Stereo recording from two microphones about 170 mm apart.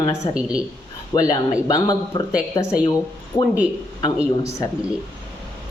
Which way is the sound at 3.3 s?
15° left (ahead or behind).